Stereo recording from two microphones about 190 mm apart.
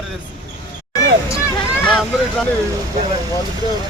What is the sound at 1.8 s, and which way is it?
Speech, 5° left (ahead or behind).